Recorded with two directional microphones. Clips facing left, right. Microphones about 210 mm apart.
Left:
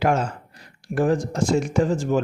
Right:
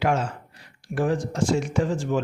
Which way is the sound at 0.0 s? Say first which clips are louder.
Left 2 dB; 40° left (ahead or behind).